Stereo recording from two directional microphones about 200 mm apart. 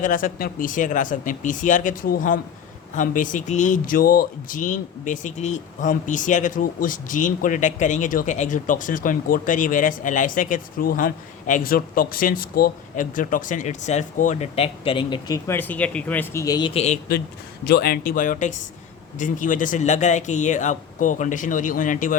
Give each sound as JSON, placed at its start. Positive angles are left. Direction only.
{"t": 0.0, "sound": "speech", "side_deg": 40}
{"t": 15.4, "sound": "speech", "side_deg": 10}
{"t": 17.7, "sound": "speech", "side_deg": 50}